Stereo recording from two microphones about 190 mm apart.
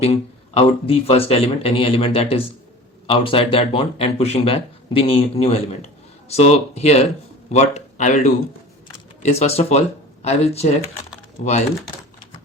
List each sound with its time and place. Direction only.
0.0 s speech: 30° left (ahead or behind)